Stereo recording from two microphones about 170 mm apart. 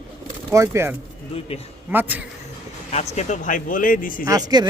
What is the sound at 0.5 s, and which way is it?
Speech, 15° right (ahead or behind).